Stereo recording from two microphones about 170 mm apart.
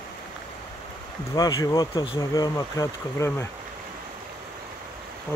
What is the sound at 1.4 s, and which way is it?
Speech, 20° left (ahead or behind).